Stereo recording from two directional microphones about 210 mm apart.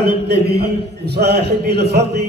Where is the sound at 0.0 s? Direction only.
50° right (ahead or behind).